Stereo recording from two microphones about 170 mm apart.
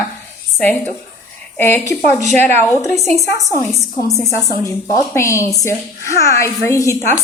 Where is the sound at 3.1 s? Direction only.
Centre (ahead or behind).